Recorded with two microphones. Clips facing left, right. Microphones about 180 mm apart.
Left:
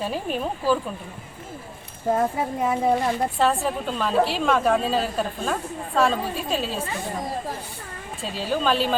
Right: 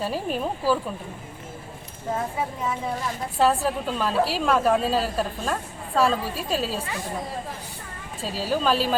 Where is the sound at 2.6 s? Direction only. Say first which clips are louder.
Left 7 dB; 55° left (ahead or behind).